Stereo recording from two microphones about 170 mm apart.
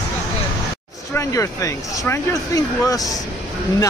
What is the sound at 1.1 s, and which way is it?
Speech, 20° left (ahead or behind).